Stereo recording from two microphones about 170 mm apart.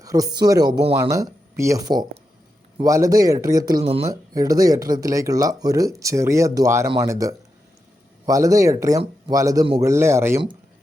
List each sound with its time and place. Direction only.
0.0 s speech: 20° right (ahead or behind)
4.1 s speech: 20° right (ahead or behind)